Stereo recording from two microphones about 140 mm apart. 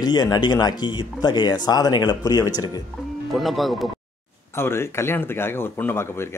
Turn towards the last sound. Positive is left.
turn(degrees=15)  # may be behind; listen again after turning